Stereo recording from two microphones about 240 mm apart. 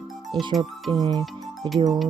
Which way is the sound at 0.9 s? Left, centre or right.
Centre.